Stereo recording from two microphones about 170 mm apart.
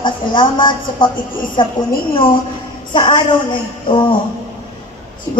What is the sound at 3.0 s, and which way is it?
A woman's voice, 25° left (ahead or behind).